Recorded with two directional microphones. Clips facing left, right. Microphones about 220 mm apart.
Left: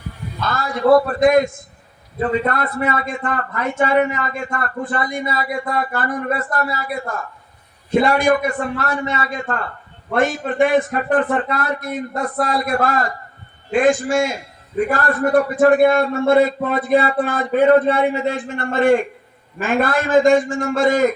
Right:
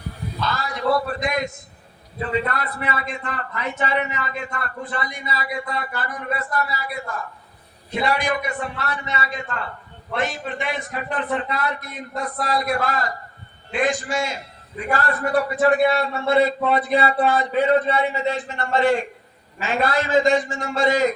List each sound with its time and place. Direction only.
0.4 s a man's voice: 50° left (ahead or behind)